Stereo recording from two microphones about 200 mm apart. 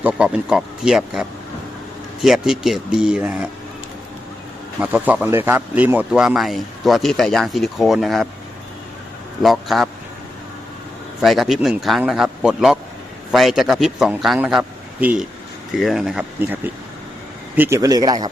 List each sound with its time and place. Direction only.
0.0 s speech: 5° right (ahead or behind)
4.8 s speech: 5° right (ahead or behind)
9.4 s speech: centre (ahead or behind)
11.2 s speech: centre (ahead or behind); by 18.3 s 20° right (ahead or behind)